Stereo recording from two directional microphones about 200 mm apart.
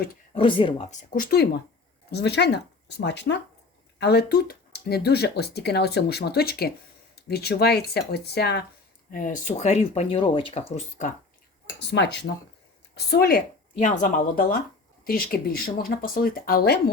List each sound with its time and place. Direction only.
0.3 s speech: 25° left (ahead or behind)
1.1 s speech: 45° left (ahead or behind)
9.1 s speech: 40° left (ahead or behind)
11.8 s speech: 60° left (ahead or behind)